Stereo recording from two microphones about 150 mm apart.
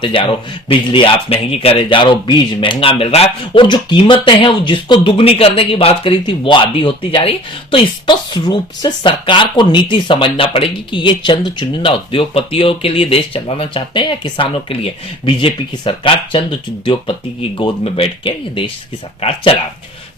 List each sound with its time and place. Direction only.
0.0 s speech: 35° left (ahead or behind)